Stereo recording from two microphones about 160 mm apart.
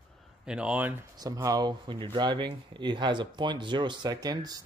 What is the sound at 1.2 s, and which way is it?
Speech, 20° right (ahead or behind).